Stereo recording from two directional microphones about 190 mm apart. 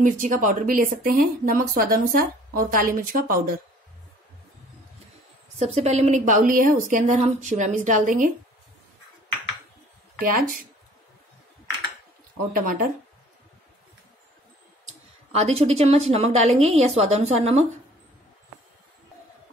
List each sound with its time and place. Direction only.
0.0 s speech: 45° right (ahead or behind)
5.6 s a woman's voice: 35° right (ahead or behind)
12.5 s speech: 45° right (ahead or behind)
15.3 s a woman's voice: 35° right (ahead or behind)